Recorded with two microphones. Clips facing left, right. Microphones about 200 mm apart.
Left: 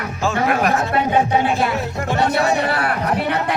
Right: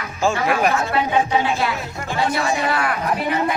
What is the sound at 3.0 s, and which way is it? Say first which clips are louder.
Speech: left 1 dB; 70° left (ahead or behind).